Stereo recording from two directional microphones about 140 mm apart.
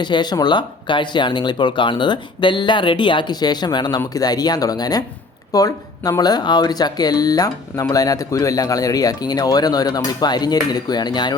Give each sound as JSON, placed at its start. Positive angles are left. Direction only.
{"t": 0.0, "sound": "speech", "side_deg": 30}